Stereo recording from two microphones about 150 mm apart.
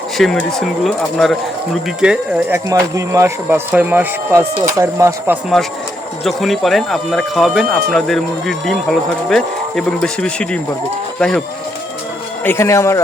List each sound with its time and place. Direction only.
0.2 s speech: centre (ahead or behind)
2.6 s speech: 20° right (ahead or behind)
6.2 s speech: centre (ahead or behind)
12.5 s speech: 20° left (ahead or behind)